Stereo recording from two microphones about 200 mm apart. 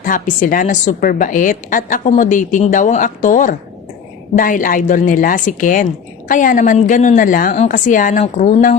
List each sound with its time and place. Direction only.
0.0 s a woman's voice: 40° left (ahead or behind)